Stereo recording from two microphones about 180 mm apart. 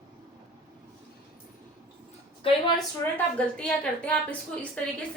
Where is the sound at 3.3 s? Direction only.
5° left (ahead or behind).